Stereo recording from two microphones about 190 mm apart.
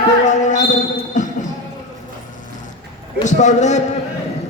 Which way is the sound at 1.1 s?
40° left (ahead or behind).